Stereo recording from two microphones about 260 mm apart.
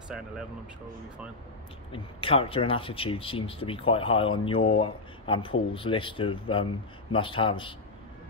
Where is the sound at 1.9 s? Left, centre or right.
Left.